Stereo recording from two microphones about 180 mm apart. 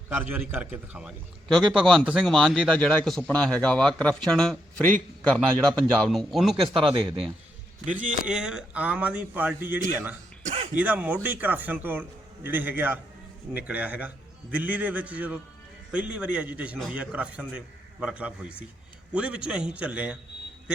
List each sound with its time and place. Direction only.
0.2 s a man's voice: 10° right (ahead or behind)
8.2 s a man's voice: 5° right (ahead or behind)
10.4 s throat clearing: 35° right (ahead or behind)
10.8 s a man's voice: 10° right (ahead or behind)